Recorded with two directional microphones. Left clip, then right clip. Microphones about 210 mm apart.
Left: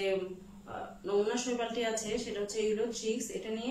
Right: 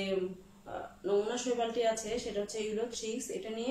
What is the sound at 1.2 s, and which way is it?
A woman's voice, 15° right (ahead or behind).